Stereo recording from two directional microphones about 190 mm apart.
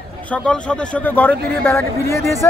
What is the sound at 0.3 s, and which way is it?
A man's voice, 5° left (ahead or behind).